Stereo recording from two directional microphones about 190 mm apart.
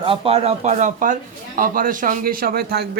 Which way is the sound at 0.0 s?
30° right (ahead or behind).